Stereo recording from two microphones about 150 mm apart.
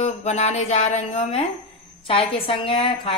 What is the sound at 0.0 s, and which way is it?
A woman's voice, 50° left (ahead or behind).